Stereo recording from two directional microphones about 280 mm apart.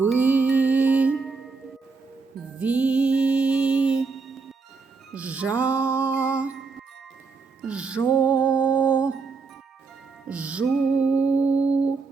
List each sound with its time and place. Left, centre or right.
0.0 s music: centre
2.6 s music: centre
7.6 s music: centre
10.2 s music: centre